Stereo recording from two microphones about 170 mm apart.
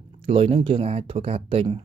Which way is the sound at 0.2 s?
35° right (ahead or behind).